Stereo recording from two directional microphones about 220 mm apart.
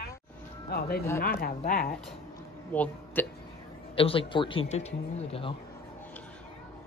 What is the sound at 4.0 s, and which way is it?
A man's voice, 25° left (ahead or behind).